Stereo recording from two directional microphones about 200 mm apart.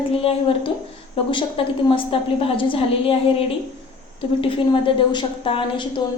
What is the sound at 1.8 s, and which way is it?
A woman's voice, 25° left (ahead or behind).